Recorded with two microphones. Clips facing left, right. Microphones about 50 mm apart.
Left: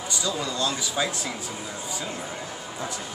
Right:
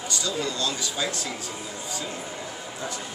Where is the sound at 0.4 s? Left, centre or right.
Centre.